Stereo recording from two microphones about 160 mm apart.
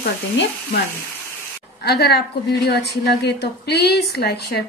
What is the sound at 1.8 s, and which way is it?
A woman's voice, 90° left.